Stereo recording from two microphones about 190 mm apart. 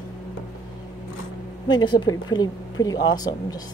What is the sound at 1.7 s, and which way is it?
A woman's voice, 25° left (ahead or behind).